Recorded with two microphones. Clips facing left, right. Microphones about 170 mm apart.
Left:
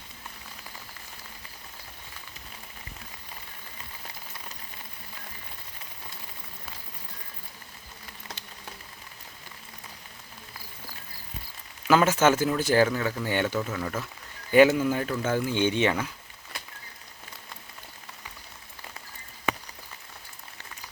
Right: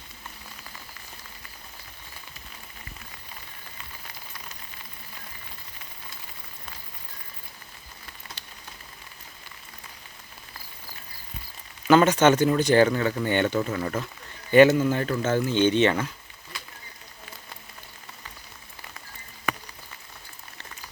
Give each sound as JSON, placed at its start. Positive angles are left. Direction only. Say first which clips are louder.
{"t": 11.9, "sound": "speech", "louder": "right 3 dB", "side_deg": 5}
{"t": 14.5, "sound": "speech", "louder": "right 2 dB", "side_deg": 10}
{"t": 19.5, "sound": "rain on surface", "louder": "left 1 dB", "side_deg": 25}